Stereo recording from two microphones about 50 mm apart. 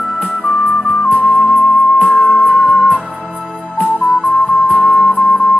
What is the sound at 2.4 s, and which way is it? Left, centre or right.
Music, centre.